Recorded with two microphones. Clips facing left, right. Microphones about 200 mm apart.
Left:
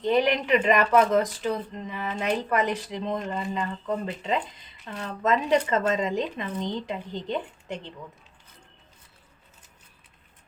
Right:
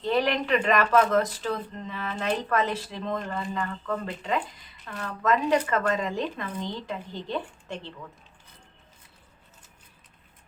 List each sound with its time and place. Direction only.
0.0 s speech: 15° left (ahead or behind)